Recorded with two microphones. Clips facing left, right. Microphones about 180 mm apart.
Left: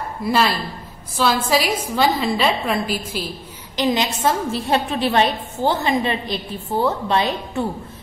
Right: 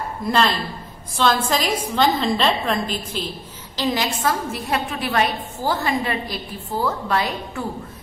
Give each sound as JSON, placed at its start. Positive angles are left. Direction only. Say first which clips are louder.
{"t": 0.2, "sound": "a woman's voice", "louder": "left 1 dB", "side_deg": 5}
{"t": 3.7, "sound": "a woman's voice", "louder": "left 3 dB", "side_deg": 20}